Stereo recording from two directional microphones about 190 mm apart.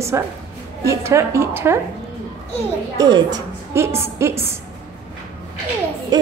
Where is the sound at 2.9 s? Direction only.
20° right (ahead or behind).